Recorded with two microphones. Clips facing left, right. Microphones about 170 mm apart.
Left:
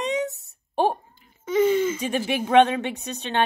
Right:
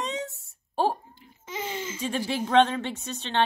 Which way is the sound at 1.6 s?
55° left (ahead or behind).